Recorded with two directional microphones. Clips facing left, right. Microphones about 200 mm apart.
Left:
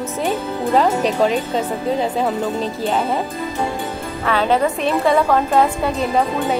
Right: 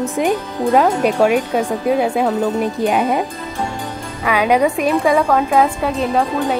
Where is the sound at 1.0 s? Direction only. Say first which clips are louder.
Right 3 dB; 10° right (ahead or behind).